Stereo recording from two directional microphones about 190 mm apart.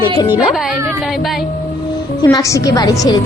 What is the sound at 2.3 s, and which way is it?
Speech, 15° left (ahead or behind).